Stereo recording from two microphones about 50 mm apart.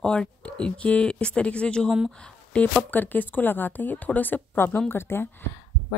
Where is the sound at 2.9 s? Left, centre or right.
Left.